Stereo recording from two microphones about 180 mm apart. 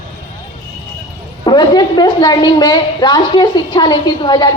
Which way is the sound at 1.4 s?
25° left (ahead or behind).